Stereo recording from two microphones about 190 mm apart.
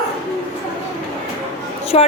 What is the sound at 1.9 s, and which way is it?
Speech, 35° left (ahead or behind).